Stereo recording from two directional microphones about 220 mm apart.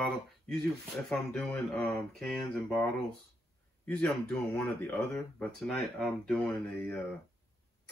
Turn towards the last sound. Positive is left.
turn(degrees=10)  # may be behind; listen again after turning